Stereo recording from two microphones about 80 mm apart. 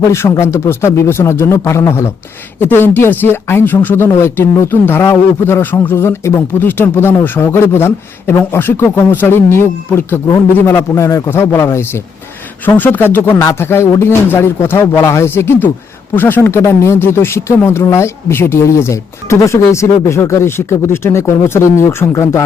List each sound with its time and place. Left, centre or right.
0.0 s speech: left
12.6 s speech: left